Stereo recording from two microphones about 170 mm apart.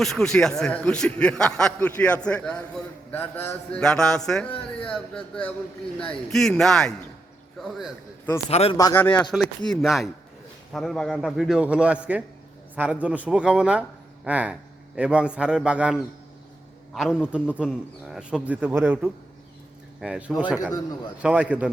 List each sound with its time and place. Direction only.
0.0 s a man's voice: 5° left (ahead or behind)
8.4 s speech: 35° left (ahead or behind)
8.8 s a man's voice: 15° left (ahead or behind); by 21.7 s 5° right (ahead or behind)